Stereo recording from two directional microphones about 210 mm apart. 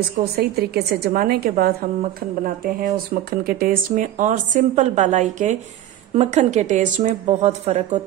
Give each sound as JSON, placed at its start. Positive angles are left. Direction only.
{"t": 0.2, "sound": "a woman's voice", "side_deg": -50}